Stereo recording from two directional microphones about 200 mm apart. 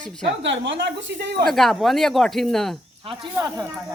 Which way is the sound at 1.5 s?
Centre (ahead or behind).